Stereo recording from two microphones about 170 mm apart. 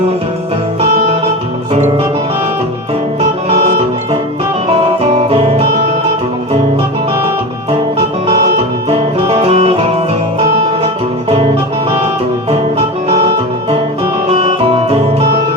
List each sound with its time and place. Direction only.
9.3 s music: 35° right (ahead or behind)
12.5 s music: 35° right (ahead or behind)